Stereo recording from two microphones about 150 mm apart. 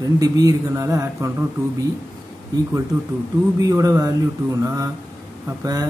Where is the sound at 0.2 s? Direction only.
25° right (ahead or behind).